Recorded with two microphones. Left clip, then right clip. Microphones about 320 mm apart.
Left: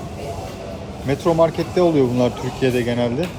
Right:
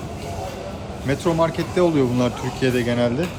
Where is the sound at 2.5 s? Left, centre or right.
Right.